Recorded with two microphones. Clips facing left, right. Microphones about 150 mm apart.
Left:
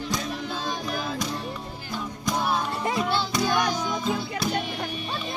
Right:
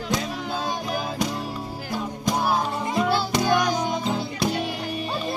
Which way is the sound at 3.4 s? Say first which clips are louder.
Right 3 dB; 55° right (ahead or behind).